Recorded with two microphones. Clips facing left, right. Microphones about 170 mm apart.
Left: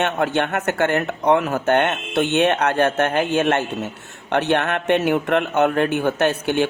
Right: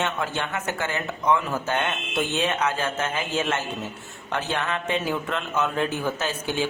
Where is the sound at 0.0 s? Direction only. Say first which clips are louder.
Left 7 dB; 65° left (ahead or behind).